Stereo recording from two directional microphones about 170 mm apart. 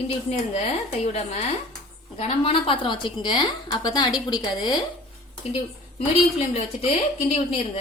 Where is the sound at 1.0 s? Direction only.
40° left (ahead or behind).